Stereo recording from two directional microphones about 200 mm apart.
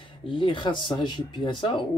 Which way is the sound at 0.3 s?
25° left (ahead or behind).